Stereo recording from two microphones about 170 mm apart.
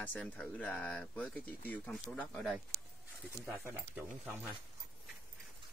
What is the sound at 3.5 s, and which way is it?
Speech, 15° right (ahead or behind).